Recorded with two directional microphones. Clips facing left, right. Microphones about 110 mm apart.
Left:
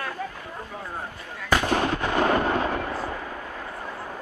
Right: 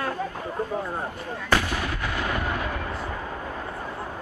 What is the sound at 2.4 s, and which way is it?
Artillery fire, 30° left (ahead or behind).